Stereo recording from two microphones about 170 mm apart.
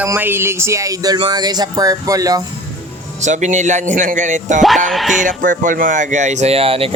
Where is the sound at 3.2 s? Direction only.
45° right (ahead or behind).